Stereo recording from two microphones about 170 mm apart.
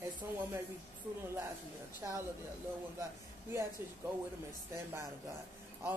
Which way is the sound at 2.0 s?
15° right (ahead or behind).